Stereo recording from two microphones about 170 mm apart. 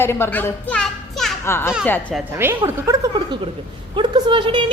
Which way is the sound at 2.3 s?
15° right (ahead or behind).